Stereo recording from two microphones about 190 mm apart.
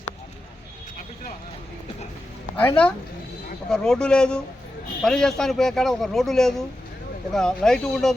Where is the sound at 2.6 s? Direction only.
10° left (ahead or behind).